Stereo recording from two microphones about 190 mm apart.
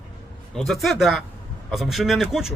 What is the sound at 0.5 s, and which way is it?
Speech, centre (ahead or behind).